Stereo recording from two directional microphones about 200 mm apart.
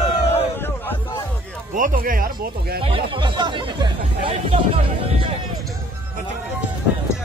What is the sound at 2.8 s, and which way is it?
Speech, 25° right (ahead or behind).